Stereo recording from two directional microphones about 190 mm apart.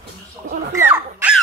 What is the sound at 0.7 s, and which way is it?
Speech, 10° right (ahead or behind).